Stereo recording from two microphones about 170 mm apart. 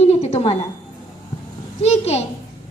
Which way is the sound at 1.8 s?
40° left (ahead or behind).